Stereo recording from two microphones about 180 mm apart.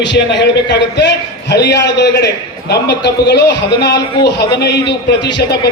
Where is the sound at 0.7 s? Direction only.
75° left (ahead or behind).